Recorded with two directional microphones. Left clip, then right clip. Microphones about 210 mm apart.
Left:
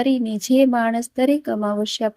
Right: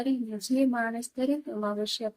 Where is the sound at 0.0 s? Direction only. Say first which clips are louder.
Left 10 dB; 35° left (ahead or behind).